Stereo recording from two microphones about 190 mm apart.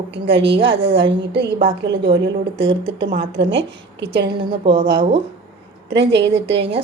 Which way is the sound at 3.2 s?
70° right (ahead or behind).